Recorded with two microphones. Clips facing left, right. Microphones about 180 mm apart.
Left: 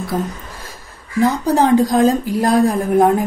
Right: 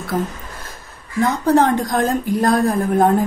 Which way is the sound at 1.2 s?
10° left (ahead or behind).